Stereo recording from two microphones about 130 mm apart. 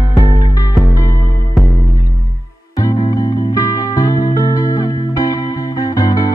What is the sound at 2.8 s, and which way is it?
Music, 30° left (ahead or behind).